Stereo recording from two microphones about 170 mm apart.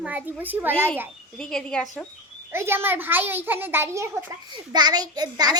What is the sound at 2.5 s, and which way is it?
A child's voice, 15° right (ahead or behind).